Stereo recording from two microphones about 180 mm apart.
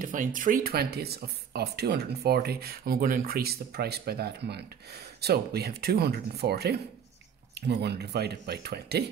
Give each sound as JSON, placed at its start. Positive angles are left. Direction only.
{"t": 0.0, "sound": "speech", "side_deg": -50}